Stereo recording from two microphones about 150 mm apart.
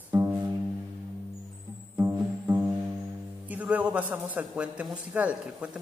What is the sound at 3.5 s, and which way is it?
A man's voice, 10° right (ahead or behind).